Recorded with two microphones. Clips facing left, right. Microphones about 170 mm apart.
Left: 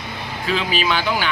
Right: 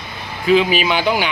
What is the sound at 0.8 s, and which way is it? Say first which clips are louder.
Speech: right 3 dB; 15° right (ahead or behind).